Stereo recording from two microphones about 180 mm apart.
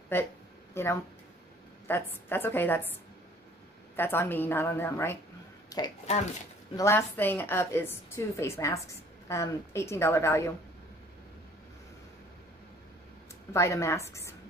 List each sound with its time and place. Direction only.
0.1 s a woman's voice: 10° left (ahead or behind)
3.9 s a woman's voice: 10° left (ahead or behind)
13.5 s a woman's voice: 15° left (ahead or behind)